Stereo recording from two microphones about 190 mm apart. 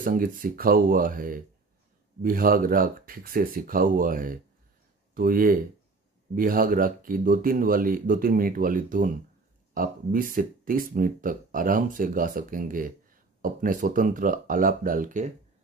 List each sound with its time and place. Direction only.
0.0 s speech: 45° right (ahead or behind)